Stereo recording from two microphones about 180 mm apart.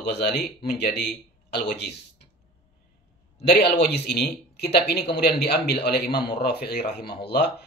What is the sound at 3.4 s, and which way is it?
Speech, 65° left (ahead or behind).